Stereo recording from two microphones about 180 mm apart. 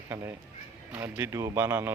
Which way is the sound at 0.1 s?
15° right (ahead or behind).